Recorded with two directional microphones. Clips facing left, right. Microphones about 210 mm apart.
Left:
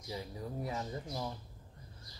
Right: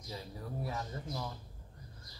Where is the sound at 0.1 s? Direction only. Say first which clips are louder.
Left 2 dB; 15° left (ahead or behind).